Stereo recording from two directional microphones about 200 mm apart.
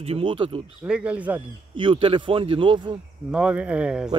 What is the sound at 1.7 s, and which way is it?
A man's voice, 25° right (ahead or behind).